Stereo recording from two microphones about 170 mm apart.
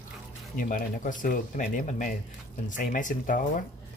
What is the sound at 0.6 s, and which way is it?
Speech, 50° left (ahead or behind).